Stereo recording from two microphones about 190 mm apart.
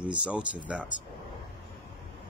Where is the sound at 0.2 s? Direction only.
5° right (ahead or behind).